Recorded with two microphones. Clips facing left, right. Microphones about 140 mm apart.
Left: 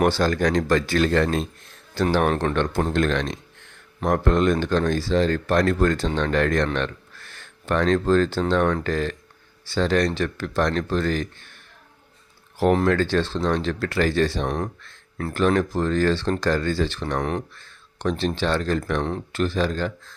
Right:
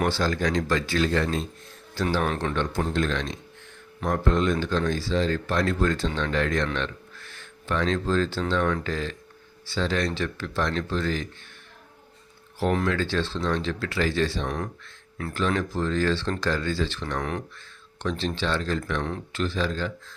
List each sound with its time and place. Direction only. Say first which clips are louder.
0.0 s speech: left 5 dB; 55° left (ahead or behind)
2.1 s speech: left 5 dB; 45° left (ahead or behind)
12.9 s speech: left 5 dB; 55° left (ahead or behind)
14.4 s speech: left 4 dB; 35° left (ahead or behind)
15.3 s speech: left 6 dB; 55° left (ahead or behind)